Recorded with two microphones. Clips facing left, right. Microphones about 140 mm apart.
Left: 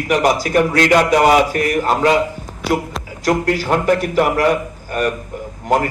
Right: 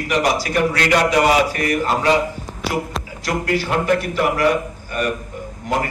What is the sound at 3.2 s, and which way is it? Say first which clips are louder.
A man's voice: left 5 dB; 45° left (ahead or behind).